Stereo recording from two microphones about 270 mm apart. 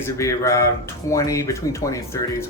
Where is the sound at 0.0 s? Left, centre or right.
Centre.